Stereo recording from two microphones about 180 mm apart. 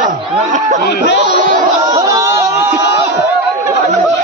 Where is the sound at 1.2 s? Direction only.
45° right (ahead or behind).